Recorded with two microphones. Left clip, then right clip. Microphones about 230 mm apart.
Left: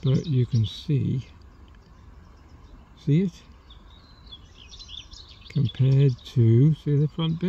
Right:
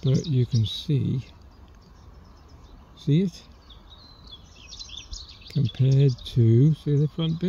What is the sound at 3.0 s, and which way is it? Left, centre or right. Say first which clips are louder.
Speech: even; centre.